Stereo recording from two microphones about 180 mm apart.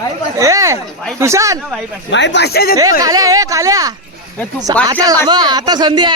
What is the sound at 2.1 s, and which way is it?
Speech, 75° left (ahead or behind).